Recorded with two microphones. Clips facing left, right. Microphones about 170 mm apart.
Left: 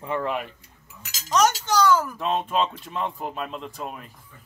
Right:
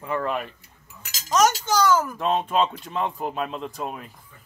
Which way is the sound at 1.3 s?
5° right (ahead or behind).